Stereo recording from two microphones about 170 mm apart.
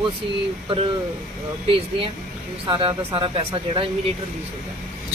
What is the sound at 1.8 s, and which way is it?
Speech, 30° right (ahead or behind).